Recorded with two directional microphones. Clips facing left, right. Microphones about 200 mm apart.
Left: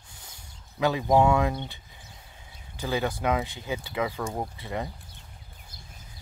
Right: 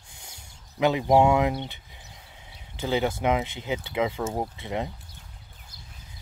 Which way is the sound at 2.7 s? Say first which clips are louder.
Right 3 dB; 20° right (ahead or behind).